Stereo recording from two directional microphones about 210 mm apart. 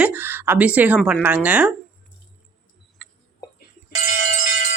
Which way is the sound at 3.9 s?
35° left (ahead or behind).